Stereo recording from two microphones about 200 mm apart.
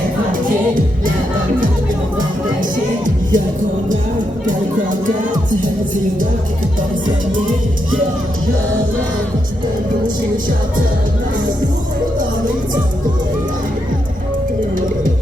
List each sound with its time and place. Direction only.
2.1 s music: 40° right (ahead or behind)
4.4 s music: 40° right (ahead or behind)